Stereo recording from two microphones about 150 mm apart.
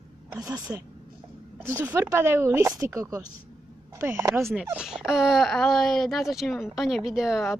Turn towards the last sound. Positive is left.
turn(degrees=0)  # may be behind; listen again after turning